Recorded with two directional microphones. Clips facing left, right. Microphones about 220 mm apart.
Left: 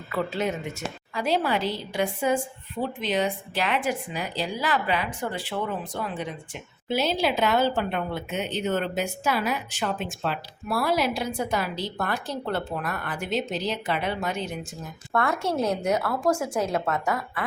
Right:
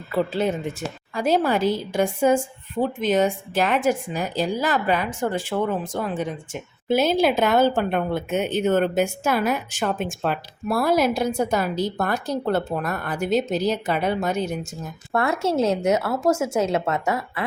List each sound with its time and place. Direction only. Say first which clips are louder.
0.1 s speech: right 5 dB; 30° right (ahead or behind)
1.1 s a woman's voice: right 5 dB; 45° right (ahead or behind)
15.1 s a woman's voice: right 4 dB; 25° right (ahead or behind)